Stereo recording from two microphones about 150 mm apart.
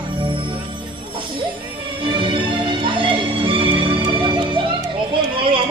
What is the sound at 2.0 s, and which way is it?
Music, 35° right (ahead or behind).